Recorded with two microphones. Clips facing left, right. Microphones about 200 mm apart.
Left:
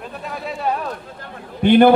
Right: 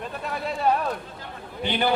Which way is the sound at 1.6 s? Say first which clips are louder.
Left 13 dB; 55° left (ahead or behind).